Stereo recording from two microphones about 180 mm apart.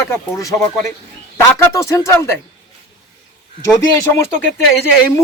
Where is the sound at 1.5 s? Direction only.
15° left (ahead or behind).